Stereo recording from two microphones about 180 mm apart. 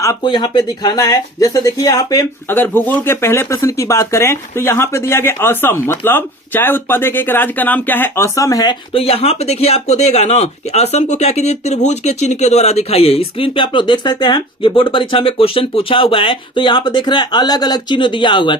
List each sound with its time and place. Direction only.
0.0 s speech: 20° left (ahead or behind)
8.9 s speech: 30° left (ahead or behind)